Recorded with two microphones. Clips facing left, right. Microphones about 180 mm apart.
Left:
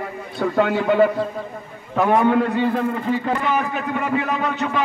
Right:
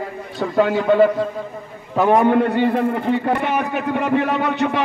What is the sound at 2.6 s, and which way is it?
A man's voice, 60° right (ahead or behind).